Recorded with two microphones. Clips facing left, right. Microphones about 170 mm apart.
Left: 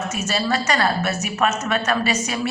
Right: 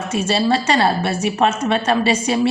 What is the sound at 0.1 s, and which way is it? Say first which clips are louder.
A woman's voice: right 8 dB; 30° right (ahead or behind).